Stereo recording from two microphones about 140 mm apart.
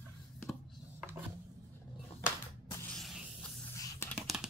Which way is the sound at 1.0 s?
10° right (ahead or behind).